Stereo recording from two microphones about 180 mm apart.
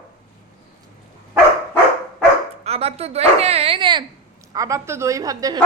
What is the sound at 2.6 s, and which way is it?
Dog, 35° right (ahead or behind).